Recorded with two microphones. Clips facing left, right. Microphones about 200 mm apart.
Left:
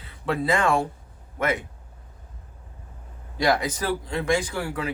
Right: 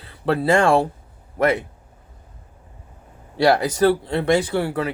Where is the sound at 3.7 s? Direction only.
70° right (ahead or behind).